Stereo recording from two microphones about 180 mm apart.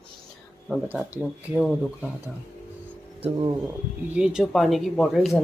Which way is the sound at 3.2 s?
25° right (ahead or behind).